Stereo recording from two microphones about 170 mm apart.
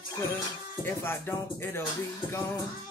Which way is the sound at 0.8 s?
15° left (ahead or behind).